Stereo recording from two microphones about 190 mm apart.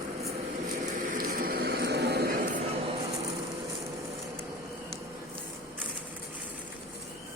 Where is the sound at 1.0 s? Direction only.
45° right (ahead or behind).